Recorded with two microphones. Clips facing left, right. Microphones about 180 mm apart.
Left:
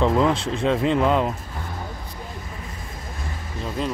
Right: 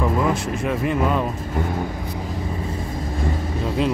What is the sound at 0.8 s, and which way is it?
Speech, 20° left (ahead or behind).